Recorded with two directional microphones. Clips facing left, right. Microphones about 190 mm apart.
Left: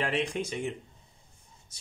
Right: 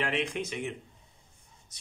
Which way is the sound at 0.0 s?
35° left (ahead or behind).